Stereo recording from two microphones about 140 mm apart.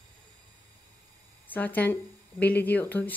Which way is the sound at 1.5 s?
10° left (ahead or behind).